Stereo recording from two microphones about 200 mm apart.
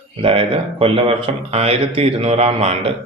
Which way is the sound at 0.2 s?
30° right (ahead or behind).